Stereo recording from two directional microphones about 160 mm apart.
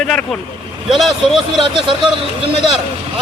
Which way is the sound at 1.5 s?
30° right (ahead or behind).